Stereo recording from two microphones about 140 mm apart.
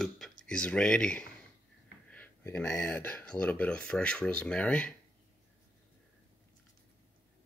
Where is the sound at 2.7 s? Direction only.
10° left (ahead or behind).